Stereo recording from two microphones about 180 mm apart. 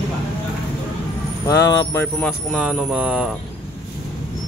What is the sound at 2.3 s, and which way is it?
Speech, 5° right (ahead or behind).